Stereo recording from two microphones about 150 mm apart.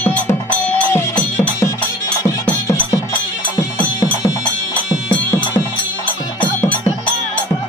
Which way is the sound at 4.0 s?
20° left (ahead or behind).